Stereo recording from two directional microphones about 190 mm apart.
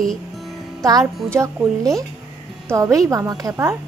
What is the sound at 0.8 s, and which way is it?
Music, 20° right (ahead or behind).